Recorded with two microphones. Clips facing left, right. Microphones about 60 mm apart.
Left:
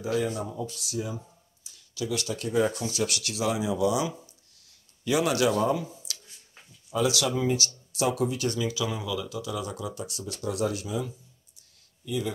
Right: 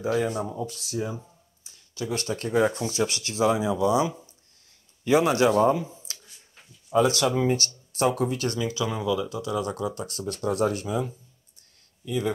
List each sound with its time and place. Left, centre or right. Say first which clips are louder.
0.0 s speech: right 3 dB; right
9.0 s speech: right 5 dB; right
9.9 s speech: right 4 dB; right